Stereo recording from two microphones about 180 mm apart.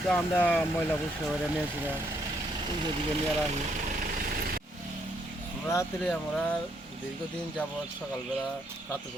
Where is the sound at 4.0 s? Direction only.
55° right (ahead or behind).